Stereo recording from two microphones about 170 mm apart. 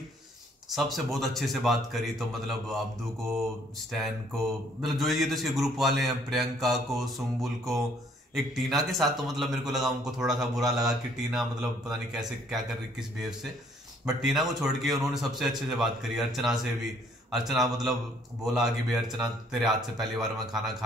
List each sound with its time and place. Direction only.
0.7 s speech: centre (ahead or behind)
4.8 s speech: centre (ahead or behind)
14.0 s speech: centre (ahead or behind)